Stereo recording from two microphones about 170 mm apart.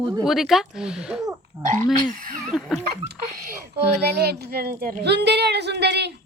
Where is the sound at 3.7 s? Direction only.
70° right (ahead or behind).